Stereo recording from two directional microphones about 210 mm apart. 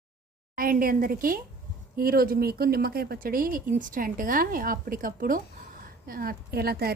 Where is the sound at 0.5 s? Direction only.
40° right (ahead or behind).